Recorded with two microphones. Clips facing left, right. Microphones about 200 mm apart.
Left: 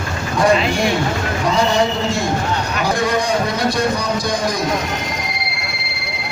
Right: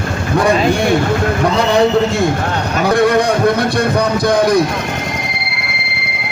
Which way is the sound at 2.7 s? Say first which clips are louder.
Right 8 dB; 60° right (ahead or behind).